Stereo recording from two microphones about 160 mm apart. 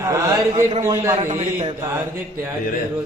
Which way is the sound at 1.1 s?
50° right (ahead or behind).